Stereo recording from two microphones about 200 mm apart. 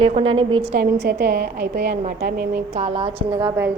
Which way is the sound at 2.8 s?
30° right (ahead or behind).